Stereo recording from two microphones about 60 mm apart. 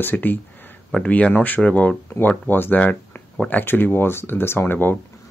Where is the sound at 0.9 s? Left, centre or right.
Left.